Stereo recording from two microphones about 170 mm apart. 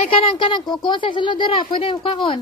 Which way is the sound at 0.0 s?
30° left (ahead or behind).